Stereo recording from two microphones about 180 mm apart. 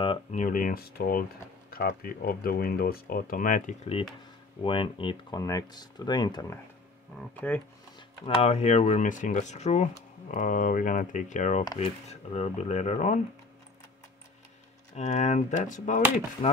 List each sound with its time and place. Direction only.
0.0 s a sound: 30° left (ahead or behind)
0.4 s speech: 50° left (ahead or behind)
4.6 s speech: 30° left (ahead or behind)
7.3 s speech: 10° left (ahead or behind)
8.4 s speech: 35° left (ahead or behind)
15.0 s speech: 40° left (ahead or behind)